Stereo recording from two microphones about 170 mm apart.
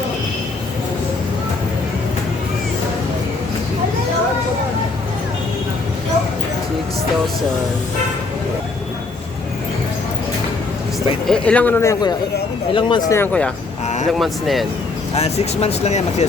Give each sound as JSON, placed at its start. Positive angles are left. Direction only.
{"t": 11.3, "sound": "speech", "side_deg": 5}
{"t": 13.8, "sound": "a sound", "side_deg": 45}
{"t": 14.1, "sound": "speech", "side_deg": 0}
{"t": 15.1, "sound": "speech", "side_deg": 40}